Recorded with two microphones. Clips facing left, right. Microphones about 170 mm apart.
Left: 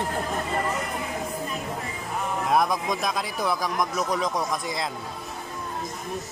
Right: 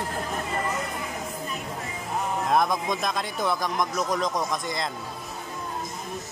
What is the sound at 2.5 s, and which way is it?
Speech, 5° left (ahead or behind).